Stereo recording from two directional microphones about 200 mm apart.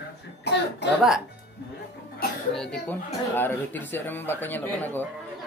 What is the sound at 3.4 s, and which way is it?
Speech, 10° left (ahead or behind).